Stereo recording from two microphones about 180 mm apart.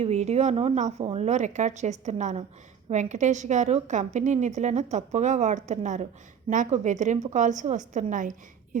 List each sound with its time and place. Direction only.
0.0 s a woman's voice: 40° right (ahead or behind)